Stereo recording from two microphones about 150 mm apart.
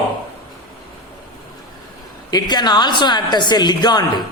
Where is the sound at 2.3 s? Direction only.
30° left (ahead or behind).